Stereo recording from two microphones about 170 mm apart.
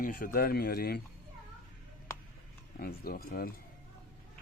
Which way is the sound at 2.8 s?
60° left (ahead or behind).